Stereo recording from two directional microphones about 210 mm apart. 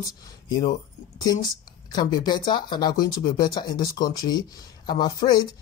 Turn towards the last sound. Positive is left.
turn(degrees=20)  # may be behind; listen again after turning